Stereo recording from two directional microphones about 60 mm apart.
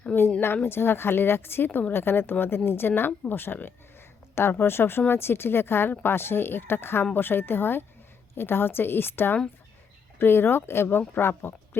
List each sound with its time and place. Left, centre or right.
0.4 s speech: left